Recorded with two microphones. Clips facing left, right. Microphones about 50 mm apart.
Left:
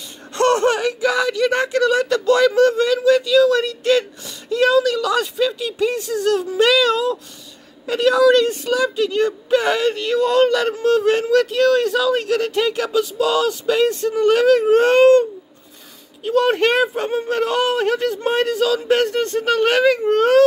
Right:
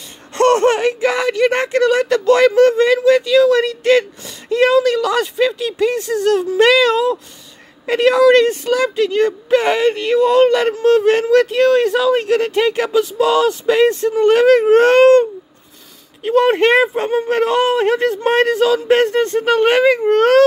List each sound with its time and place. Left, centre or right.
0.3 s speech: right
5.6 s a woman's voice: right
9.7 s speech: right
10.8 s speech: right
16.3 s speech: right